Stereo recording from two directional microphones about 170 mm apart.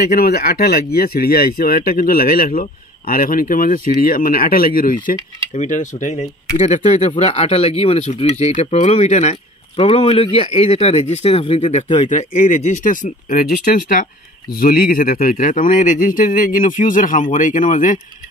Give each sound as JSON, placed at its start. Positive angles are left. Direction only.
{"t": 0.1, "sound": "speech", "side_deg": 60}